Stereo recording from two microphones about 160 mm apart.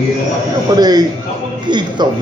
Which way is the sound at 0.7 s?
25° right (ahead or behind).